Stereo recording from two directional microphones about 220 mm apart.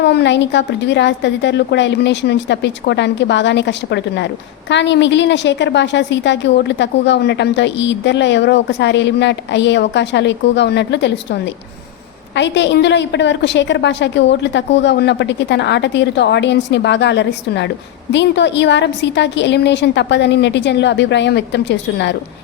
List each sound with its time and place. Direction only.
0.0 s a woman's voice: 50° left (ahead or behind)